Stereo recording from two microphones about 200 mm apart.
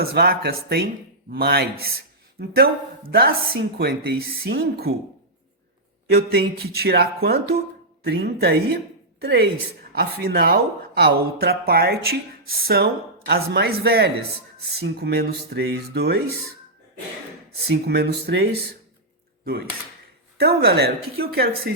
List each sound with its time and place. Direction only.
0.0 s speech: 50° right (ahead or behind)
6.1 s speech: 55° right (ahead or behind)
17.8 s speech: 55° right (ahead or behind)
20.4 s speech: 50° right (ahead or behind)